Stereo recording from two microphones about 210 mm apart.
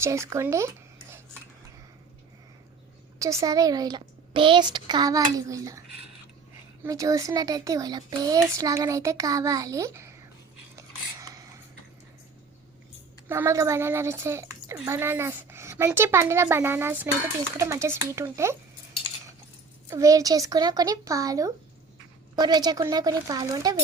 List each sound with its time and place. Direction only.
0.0 s speech: 15° right (ahead or behind)
3.2 s speech: 15° right (ahead or behind)
6.8 s speech: 15° right (ahead or behind)
10.8 s a sound: 15° right (ahead or behind)
13.2 s speech: 10° right (ahead or behind)
19.9 s speech: 15° right (ahead or behind)